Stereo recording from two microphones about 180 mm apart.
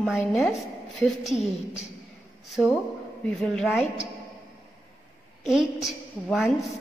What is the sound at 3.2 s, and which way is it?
Speech, centre (ahead or behind).